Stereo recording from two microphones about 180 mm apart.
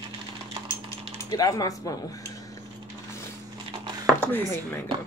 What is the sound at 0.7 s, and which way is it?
Cutlery, 20° left (ahead or behind).